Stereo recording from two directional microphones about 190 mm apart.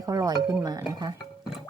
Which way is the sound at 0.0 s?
20° right (ahead or behind).